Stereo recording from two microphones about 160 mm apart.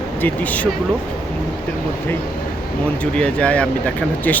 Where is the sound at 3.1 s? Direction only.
5° left (ahead or behind).